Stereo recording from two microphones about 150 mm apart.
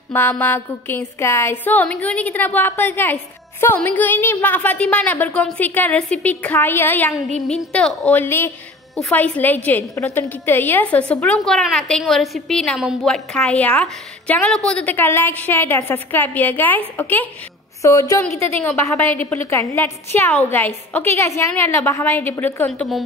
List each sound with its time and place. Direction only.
0.1 s a woman's voice: 15° left (ahead or behind)
8.2 s a woman's voice: 15° left (ahead or behind)